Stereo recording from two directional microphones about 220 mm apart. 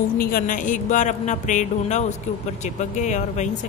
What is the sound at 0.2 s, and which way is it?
A woman's voice, 40° left (ahead or behind).